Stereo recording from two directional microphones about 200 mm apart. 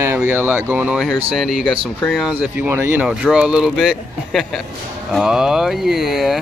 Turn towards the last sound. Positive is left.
turn(degrees=0)  # may be behind; listen again after turning